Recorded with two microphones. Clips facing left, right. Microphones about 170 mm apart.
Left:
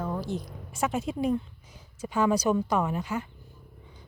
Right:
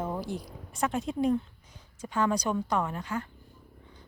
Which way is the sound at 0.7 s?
5° left (ahead or behind).